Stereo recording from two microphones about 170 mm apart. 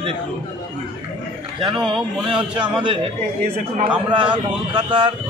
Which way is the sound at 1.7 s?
30° right (ahead or behind).